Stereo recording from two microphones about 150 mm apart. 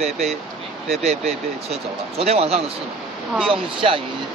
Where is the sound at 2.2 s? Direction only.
45° right (ahead or behind).